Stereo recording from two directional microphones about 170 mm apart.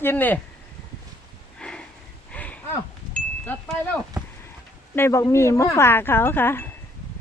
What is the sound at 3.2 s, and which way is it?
Wind chime, 10° left (ahead or behind).